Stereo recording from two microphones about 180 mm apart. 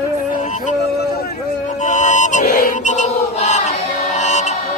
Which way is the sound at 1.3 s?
45° left (ahead or behind).